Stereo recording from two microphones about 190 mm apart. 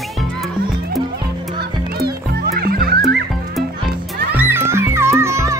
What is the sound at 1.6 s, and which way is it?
Music, 55° right (ahead or behind).